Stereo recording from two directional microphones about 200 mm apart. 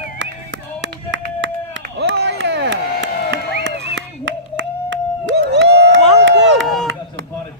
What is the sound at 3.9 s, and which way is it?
Crowd, 70° right (ahead or behind).